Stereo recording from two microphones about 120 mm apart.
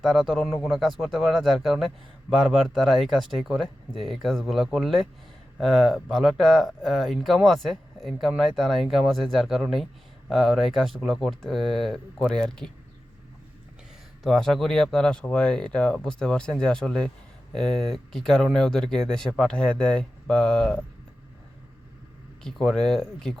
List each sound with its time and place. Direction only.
0.0 s speech: 5° right (ahead or behind)
14.3 s speech: 5° left (ahead or behind)
22.4 s speech: 5° left (ahead or behind)